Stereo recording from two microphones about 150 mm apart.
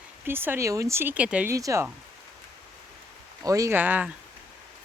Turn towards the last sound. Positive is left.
turn(degrees=-10)  # may be behind; listen again after turning